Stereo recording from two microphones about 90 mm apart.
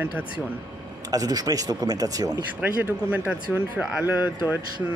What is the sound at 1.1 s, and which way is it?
Speech, 45° right (ahead or behind).